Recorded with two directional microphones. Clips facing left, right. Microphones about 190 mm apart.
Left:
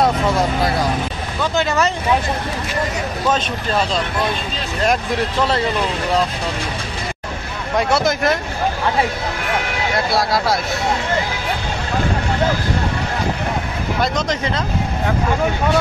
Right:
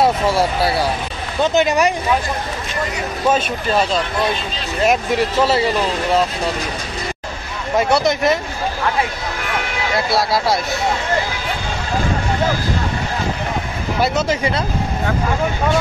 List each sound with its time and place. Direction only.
0.0 s speech: 5° right (ahead or behind)
1.4 s speech: 20° right (ahead or behind)
3.3 s speech: 5° right (ahead or behind)
7.7 s speech: centre (ahead or behind)
9.9 s speech: centre (ahead or behind)
14.0 s speech: 5° right (ahead or behind)